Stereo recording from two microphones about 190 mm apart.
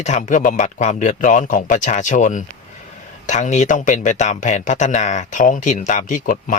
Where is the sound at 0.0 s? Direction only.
40° left (ahead or behind).